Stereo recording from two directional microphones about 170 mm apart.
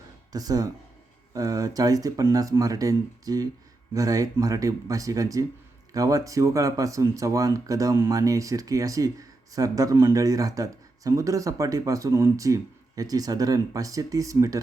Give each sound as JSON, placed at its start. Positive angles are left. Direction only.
{"t": 0.3, "sound": "speech", "side_deg": -20}